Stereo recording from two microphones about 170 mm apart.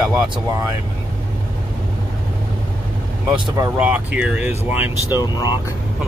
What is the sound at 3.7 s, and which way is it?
Speech, 10° right (ahead or behind).